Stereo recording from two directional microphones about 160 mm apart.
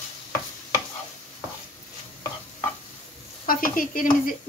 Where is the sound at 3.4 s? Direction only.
60° left (ahead or behind).